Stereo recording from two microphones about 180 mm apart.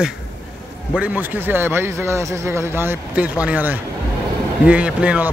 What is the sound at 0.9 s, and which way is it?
A man's voice, 10° right (ahead or behind).